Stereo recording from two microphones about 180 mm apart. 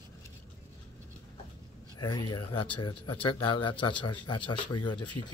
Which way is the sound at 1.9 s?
25° left (ahead or behind).